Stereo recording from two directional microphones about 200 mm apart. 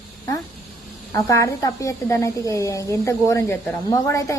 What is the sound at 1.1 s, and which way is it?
A woman's voice, 15° left (ahead or behind).